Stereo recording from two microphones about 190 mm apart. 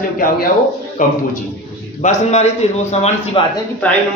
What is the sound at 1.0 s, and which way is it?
A man's voice, 45° left (ahead or behind).